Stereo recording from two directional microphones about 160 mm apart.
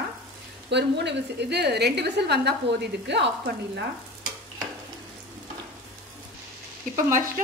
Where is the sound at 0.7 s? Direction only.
90° right.